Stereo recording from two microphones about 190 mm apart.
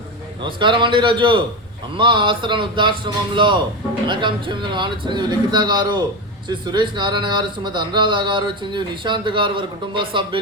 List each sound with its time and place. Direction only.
0.4 s a man's voice: 25° right (ahead or behind)